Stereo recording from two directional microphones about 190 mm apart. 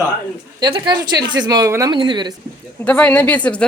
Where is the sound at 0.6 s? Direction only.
25° right (ahead or behind).